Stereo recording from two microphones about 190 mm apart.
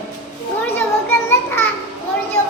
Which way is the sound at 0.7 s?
10° left (ahead or behind).